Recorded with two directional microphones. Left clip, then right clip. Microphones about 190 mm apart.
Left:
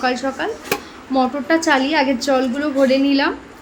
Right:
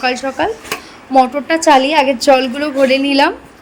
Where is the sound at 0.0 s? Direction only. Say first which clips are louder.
Right 4 dB; 30° right (ahead or behind).